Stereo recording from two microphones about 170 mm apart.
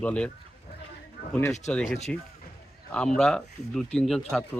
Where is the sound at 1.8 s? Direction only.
40° left (ahead or behind).